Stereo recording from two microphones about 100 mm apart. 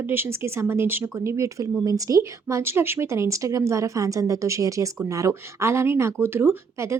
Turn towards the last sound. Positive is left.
turn(degrees=-25)  # may be behind; listen again after turning